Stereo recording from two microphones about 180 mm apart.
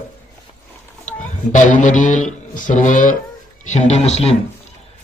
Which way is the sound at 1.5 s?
45° left (ahead or behind).